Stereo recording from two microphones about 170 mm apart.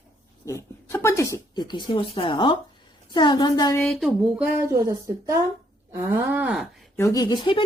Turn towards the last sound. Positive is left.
turn(degrees=25)  # may be behind; listen again after turning